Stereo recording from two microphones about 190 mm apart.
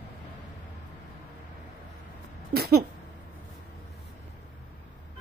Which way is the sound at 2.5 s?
55° right (ahead or behind).